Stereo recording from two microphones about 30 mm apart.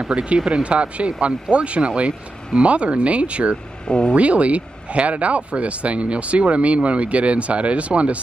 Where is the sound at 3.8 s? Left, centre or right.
Left.